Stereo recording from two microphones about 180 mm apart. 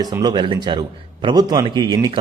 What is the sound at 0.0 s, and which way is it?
A man's voice, 20° right (ahead or behind).